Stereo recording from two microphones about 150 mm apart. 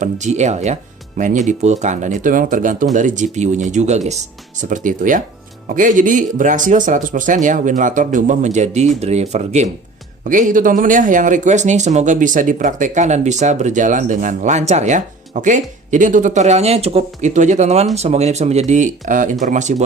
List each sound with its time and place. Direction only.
0.0 s speech: 50° right (ahead or behind)
4.7 s speech: 60° right (ahead or behind)